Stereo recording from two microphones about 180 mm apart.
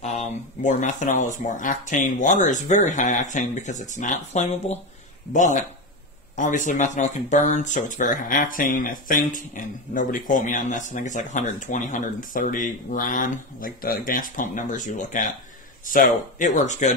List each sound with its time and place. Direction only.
0.6 s speech: 45° left (ahead or behind)